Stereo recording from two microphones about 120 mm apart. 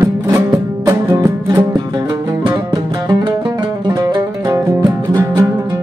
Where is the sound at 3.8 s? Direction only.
35° right (ahead or behind).